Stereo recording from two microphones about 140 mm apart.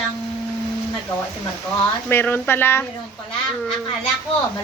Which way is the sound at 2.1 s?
15° left (ahead or behind).